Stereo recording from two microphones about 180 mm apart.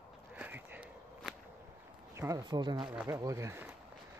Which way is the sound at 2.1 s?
20° right (ahead or behind).